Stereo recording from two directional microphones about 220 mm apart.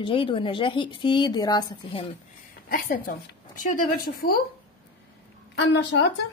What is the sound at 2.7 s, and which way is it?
A woman's voice, 40° left (ahead or behind).